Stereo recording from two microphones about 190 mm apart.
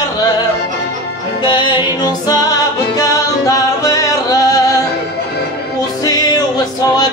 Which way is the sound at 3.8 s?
15° left (ahead or behind).